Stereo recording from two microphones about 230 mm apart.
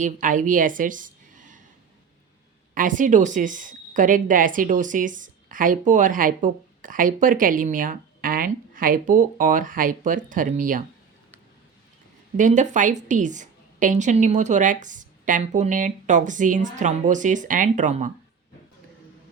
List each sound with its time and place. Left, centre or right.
0.0 s a woman's voice: right
2.7 s a woman's voice: right
12.4 s a woman's voice: right